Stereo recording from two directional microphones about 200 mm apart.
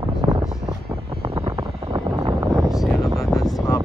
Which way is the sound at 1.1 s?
25° right (ahead or behind).